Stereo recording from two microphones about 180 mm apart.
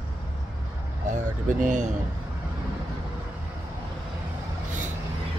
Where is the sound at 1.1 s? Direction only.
45° right (ahead or behind).